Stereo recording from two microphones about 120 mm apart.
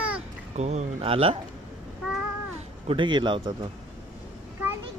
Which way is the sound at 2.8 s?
45° right (ahead or behind).